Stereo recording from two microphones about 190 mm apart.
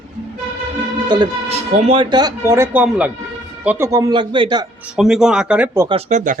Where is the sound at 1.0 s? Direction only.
25° right (ahead or behind).